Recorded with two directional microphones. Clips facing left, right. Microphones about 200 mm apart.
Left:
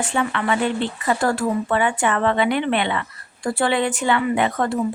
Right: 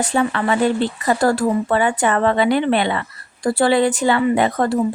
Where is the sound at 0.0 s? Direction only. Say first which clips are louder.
Right 4 dB; 35° right (ahead or behind).